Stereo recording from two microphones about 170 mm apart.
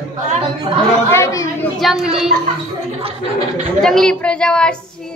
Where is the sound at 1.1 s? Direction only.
20° left (ahead or behind).